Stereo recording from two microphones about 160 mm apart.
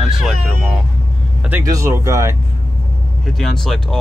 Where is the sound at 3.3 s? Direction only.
Centre (ahead or behind).